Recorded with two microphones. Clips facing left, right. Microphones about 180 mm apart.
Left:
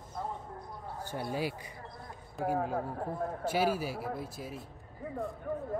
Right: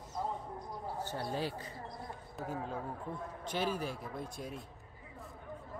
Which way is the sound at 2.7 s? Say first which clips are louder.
Left 6 dB; 50° left (ahead or behind).